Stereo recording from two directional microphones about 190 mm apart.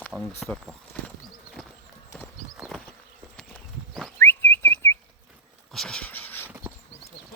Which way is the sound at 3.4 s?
Centre (ahead or behind).